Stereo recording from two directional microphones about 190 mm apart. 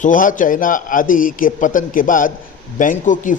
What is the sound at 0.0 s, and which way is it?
Speech, 45° left (ahead or behind).